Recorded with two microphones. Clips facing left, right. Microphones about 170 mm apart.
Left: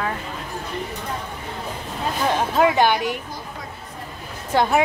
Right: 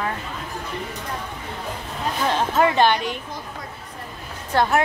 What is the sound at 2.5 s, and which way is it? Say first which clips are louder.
Speech: even; 10° left (ahead or behind).